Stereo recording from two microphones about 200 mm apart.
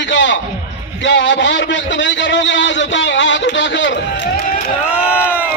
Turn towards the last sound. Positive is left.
turn(degrees=-5)  # may be behind; listen again after turning